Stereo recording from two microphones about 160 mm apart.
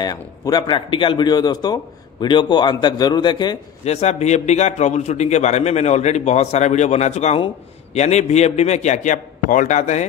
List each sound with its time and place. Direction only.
0.0 s a man's voice: 25° left (ahead or behind)
3.8 s a man's voice: 40° left (ahead or behind)